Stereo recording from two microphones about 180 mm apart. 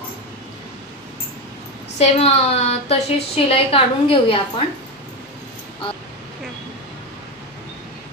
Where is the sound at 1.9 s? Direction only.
35° left (ahead or behind).